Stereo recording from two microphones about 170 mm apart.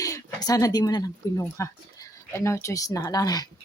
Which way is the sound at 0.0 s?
20° left (ahead or behind).